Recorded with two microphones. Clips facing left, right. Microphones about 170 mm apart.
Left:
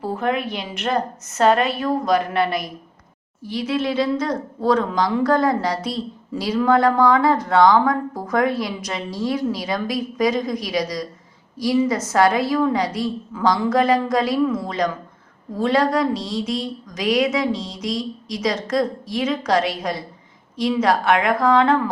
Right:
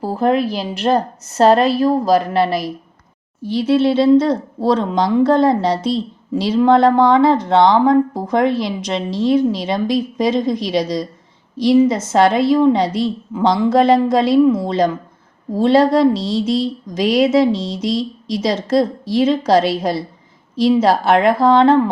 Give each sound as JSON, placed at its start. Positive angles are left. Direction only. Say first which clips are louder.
{"t": 0.0, "sound": "a woman's voice", "louder": "right 6 dB", "side_deg": -35}